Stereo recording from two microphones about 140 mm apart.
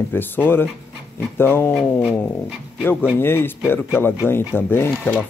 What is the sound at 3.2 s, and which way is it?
Speech, 15° left (ahead or behind).